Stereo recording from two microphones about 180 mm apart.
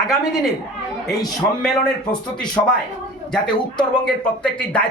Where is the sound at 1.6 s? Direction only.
5° left (ahead or behind).